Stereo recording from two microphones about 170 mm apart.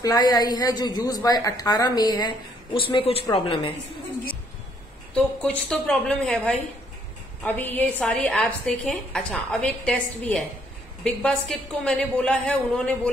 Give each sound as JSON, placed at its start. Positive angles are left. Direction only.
{"t": 0.0, "sound": "a woman's voice", "side_deg": 20}
{"t": 5.1, "sound": "a woman's voice", "side_deg": 5}